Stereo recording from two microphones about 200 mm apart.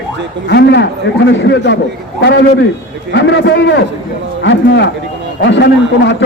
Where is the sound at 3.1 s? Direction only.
65° left (ahead or behind).